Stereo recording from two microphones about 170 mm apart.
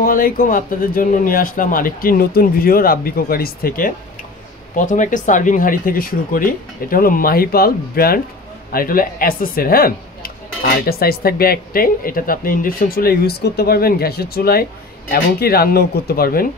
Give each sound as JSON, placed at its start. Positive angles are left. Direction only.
{"t": 0.0, "sound": "speech", "side_deg": 55}